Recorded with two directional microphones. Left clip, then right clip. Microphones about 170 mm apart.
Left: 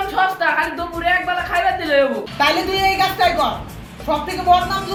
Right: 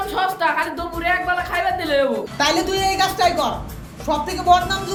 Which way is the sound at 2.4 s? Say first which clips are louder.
Left 3 dB; centre (ahead or behind).